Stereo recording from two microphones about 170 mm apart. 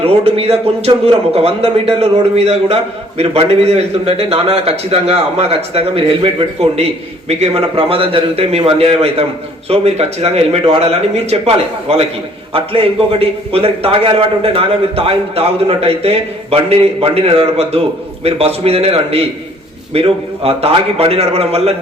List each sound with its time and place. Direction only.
0.0 s a man's voice: 35° right (ahead or behind)